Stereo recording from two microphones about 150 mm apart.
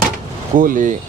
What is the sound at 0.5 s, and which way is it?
Speech, 65° right (ahead or behind).